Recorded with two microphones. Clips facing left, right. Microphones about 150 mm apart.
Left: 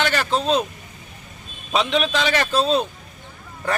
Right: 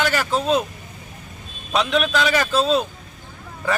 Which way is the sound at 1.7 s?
Centre (ahead or behind).